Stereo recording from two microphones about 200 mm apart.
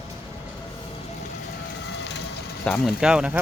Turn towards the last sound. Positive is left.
turn(degrees=-5)  # may be behind; listen again after turning